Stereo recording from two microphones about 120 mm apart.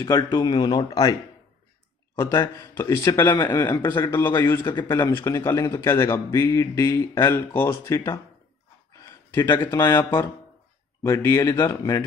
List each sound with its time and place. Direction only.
0.0 s a man's voice: 25° left (ahead or behind)
2.4 s a man's voice: 25° left (ahead or behind)
9.3 s a man's voice: 25° left (ahead or behind)